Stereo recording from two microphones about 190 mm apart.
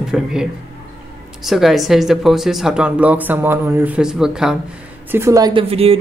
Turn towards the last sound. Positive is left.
turn(degrees=-30)  # may be behind; listen again after turning